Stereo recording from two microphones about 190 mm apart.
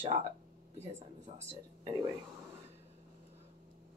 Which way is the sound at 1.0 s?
35° right (ahead or behind).